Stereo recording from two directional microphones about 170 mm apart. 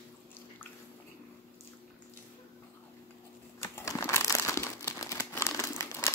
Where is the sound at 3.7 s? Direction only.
20° left (ahead or behind).